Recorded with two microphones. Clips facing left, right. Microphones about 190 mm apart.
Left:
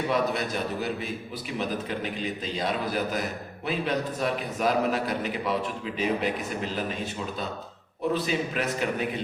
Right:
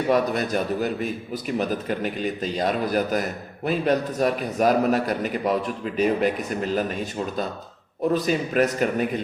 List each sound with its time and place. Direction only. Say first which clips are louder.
0.1 s a man's voice: right 8 dB; 45° right (ahead or behind)